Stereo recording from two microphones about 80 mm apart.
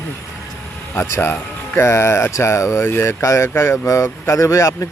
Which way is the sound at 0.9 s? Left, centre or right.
Left.